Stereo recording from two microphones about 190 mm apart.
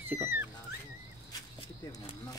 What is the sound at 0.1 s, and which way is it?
Dog, 10° right (ahead or behind).